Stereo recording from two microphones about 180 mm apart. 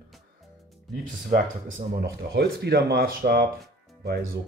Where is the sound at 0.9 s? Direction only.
55° right (ahead or behind).